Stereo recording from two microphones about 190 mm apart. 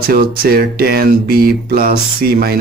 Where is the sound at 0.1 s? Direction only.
50° right (ahead or behind).